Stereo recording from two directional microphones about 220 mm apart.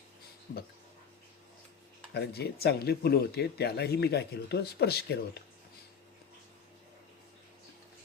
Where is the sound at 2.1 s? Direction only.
45° left (ahead or behind).